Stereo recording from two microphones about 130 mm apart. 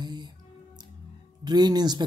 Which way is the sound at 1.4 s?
35° right (ahead or behind).